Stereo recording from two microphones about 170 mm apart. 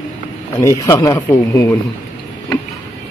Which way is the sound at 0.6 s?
15° left (ahead or behind).